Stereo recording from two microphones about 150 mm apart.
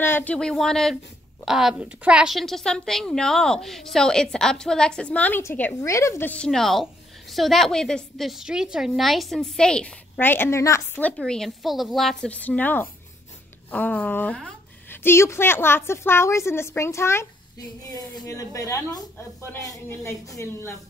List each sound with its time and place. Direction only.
0.0 s a woman's voice: 15° left (ahead or behind)